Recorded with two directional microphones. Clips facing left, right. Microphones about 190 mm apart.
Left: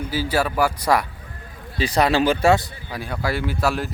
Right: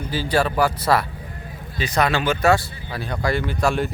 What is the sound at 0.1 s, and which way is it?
Speech, 10° left (ahead or behind).